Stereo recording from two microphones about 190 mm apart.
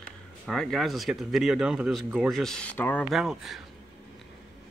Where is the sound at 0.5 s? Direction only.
Centre (ahead or behind).